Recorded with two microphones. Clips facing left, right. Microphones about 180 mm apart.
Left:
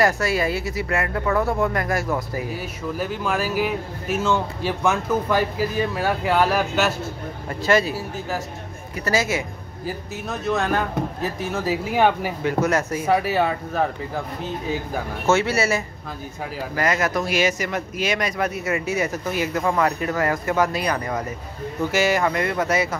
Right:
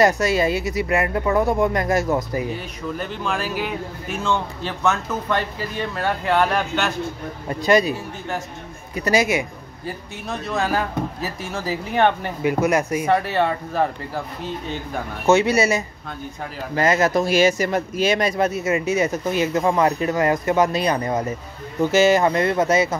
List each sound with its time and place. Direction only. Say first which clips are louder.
0.0 s speech: right 3 dB; 20° right (ahead or behind)
2.5 s speech: even; 5° left (ahead or behind)
7.4 s speech: right 2 dB; 15° right (ahead or behind)
8.9 s speech: right 3 dB; 15° right (ahead or behind)
9.8 s speech: left 1 dB; centre (ahead or behind)
12.4 s speech: right 3 dB; 10° right (ahead or behind)
13.0 s speech: even; 5° left (ahead or behind)
15.2 s speech: right 4 dB; 15° right (ahead or behind)